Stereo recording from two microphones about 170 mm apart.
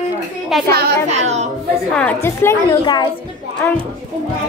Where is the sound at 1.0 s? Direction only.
40° right (ahead or behind).